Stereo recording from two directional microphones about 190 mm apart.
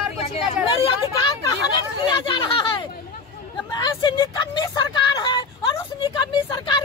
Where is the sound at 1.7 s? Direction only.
25° left (ahead or behind).